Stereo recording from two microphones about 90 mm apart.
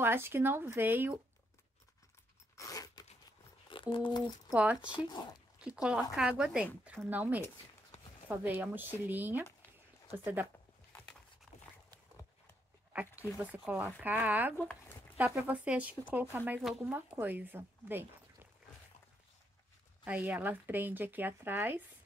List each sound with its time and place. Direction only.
0.0 s speech: 25° right (ahead or behind)
2.5 s crunch: 40° left (ahead or behind)
3.6 s a sound: 65° left (ahead or behind)
4.5 s speech: 15° right (ahead or behind)
4.8 s speech: 65° left (ahead or behind)
5.6 s speech: 10° right (ahead or behind)
12.9 s a sound: 20° right (ahead or behind)
13.4 s a woman's voice: 15° right (ahead or behind)
20.1 s speech: 15° right (ahead or behind)